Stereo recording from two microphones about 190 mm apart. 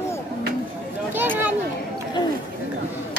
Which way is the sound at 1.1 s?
10° right (ahead or behind).